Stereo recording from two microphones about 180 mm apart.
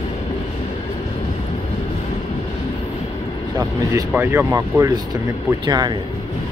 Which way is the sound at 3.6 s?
15° right (ahead or behind).